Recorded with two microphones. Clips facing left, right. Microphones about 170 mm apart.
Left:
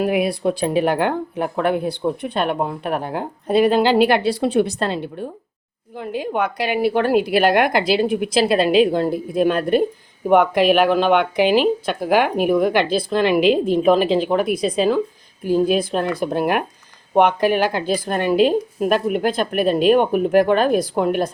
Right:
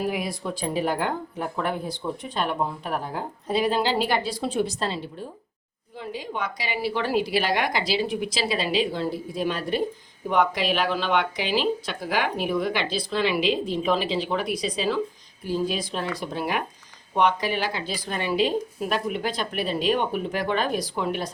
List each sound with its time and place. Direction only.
0.0 s speech: 65° left (ahead or behind)